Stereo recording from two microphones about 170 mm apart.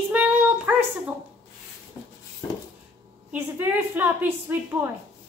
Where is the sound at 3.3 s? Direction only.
10° right (ahead or behind).